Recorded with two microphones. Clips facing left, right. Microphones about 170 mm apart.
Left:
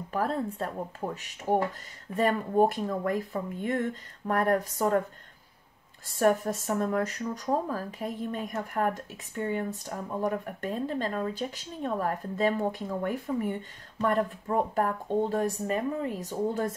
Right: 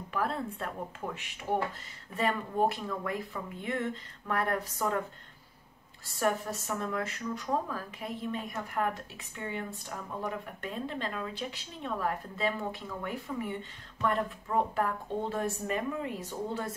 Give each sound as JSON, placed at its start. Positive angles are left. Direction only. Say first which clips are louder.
{"t": 0.1, "sound": "speech", "louder": "left 4 dB", "side_deg": 40}
{"t": 6.0, "sound": "speech", "louder": "left 6 dB", "side_deg": 50}